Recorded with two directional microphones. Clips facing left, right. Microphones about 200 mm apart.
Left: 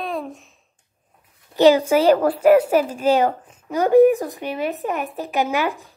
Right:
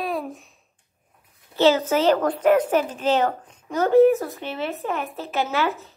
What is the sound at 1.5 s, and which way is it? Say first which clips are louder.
A woman's voice: left 4 dB; 15° left (ahead or behind).